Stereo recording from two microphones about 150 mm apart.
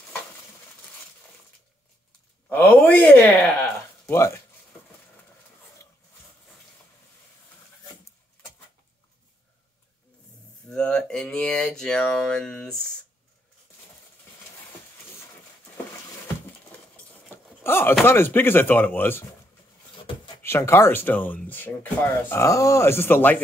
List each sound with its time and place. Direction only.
2.5 s speech: 10° left (ahead or behind)
10.7 s a sound: 5° left (ahead or behind)
11.8 s speech: 5° left (ahead or behind)
16.9 s keys jangling: 15° left (ahead or behind)
18.0 s speech: 15° left (ahead or behind)
20.4 s speech: 15° left (ahead or behind)